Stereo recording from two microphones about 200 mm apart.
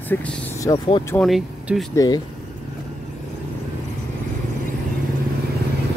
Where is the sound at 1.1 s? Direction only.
Centre (ahead or behind).